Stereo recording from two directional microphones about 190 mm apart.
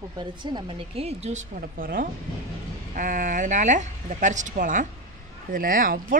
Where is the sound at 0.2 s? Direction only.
25° right (ahead or behind).